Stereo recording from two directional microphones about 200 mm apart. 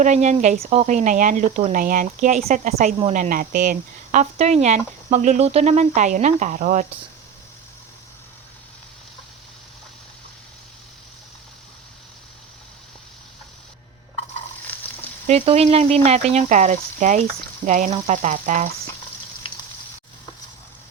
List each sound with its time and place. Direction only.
0.0 s speech: 35° right (ahead or behind)
15.3 s speech: 30° right (ahead or behind)